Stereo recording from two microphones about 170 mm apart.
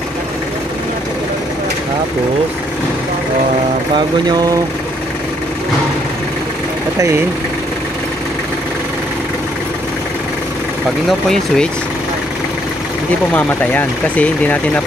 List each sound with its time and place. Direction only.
3.9 s mantra: 25° right (ahead or behind)
7.0 s speech: 15° right (ahead or behind)
11.1 s speech: 5° left (ahead or behind)
13.3 s speech: 10° left (ahead or behind)